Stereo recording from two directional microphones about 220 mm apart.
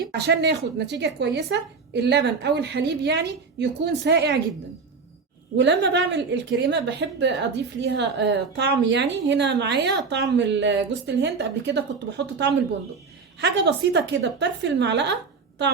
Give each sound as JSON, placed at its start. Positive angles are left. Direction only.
{"t": 0.3, "sound": "a woman's voice", "side_deg": -50}
{"t": 5.5, "sound": "a woman's voice", "side_deg": -50}